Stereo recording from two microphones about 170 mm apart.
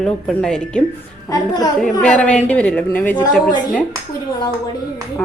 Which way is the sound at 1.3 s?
25° left (ahead or behind).